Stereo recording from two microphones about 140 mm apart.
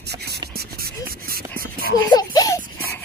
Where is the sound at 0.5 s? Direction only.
90° right.